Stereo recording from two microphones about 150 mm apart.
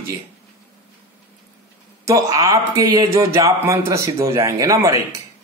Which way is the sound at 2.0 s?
20° right (ahead or behind).